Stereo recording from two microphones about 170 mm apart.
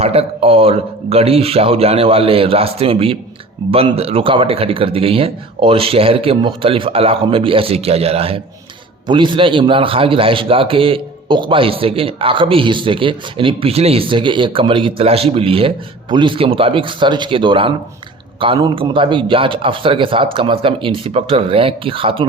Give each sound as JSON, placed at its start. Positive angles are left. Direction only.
{"t": 0.0, "sound": "a man's voice", "side_deg": -35}